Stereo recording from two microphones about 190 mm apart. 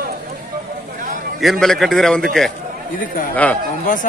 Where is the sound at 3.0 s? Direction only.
45° left (ahead or behind).